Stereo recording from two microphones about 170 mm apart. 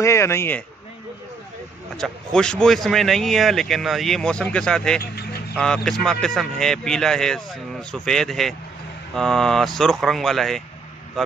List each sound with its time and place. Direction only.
0.0 s speech: 15° left (ahead or behind)
2.0 s speech: 5° left (ahead or behind)